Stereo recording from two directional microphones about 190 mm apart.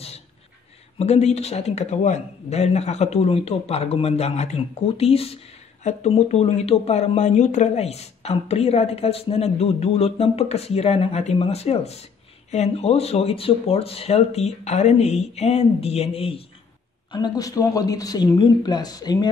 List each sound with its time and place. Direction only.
0.9 s speech: 35° left (ahead or behind)
17.1 s speech: 20° left (ahead or behind)